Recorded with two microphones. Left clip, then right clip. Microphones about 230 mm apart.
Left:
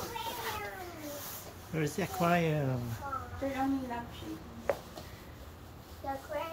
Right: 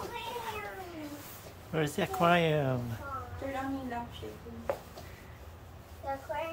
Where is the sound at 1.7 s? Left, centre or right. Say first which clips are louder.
Right 3 dB; centre.